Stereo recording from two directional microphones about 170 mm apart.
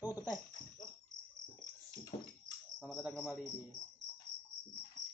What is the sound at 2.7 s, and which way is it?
Cricket, 10° left (ahead or behind).